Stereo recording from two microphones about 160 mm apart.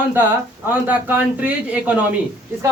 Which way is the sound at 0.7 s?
10° right (ahead or behind).